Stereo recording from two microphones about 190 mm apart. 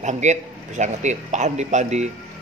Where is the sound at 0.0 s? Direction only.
40° right (ahead or behind).